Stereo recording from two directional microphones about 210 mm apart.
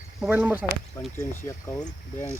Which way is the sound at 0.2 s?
5° right (ahead or behind).